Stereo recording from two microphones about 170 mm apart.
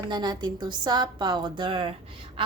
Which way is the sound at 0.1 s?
25° right (ahead or behind).